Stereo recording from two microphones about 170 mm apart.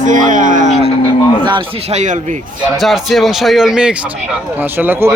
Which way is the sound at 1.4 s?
30° right (ahead or behind).